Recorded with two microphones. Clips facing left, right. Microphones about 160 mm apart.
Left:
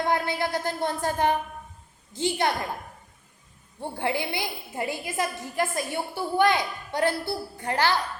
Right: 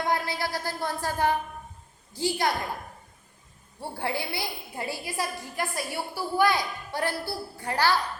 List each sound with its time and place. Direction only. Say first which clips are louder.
0.1 s a woman's voice: left 3 dB; 20° left (ahead or behind)
3.8 s a woman's voice: left 3 dB; 20° left (ahead or behind)